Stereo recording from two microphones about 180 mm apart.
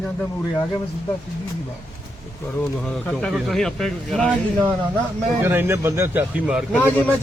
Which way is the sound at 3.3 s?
Centre (ahead or behind).